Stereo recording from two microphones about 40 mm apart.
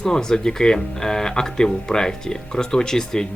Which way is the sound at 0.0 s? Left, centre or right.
Centre.